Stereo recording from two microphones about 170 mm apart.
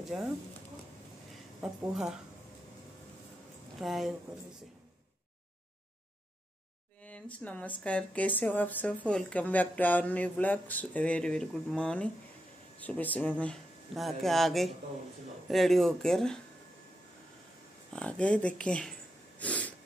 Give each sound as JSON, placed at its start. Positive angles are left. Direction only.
{"t": 0.1, "sound": "speech", "side_deg": -5}
{"t": 1.6, "sound": "speech", "side_deg": -5}
{"t": 3.8, "sound": "speech", "side_deg": 0}
{"t": 7.0, "sound": "speech", "side_deg": 10}
{"t": 17.9, "sound": "speech", "side_deg": 5}
{"t": 18.6, "sound": "a sound", "side_deg": 5}